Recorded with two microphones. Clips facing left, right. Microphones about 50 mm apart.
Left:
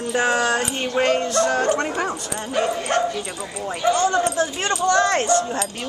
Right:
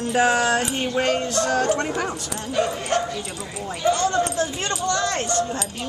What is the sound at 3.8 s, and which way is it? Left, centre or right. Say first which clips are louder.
Speech: left 2 dB; left.